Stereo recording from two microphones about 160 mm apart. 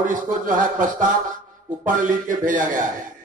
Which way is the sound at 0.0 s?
55° right (ahead or behind).